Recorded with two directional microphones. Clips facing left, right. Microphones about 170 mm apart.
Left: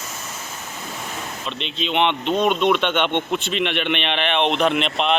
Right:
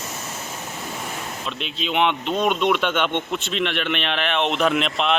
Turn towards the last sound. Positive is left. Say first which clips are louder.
# left 1 dB
turn(degrees=0)  # may be behind; listen again after turning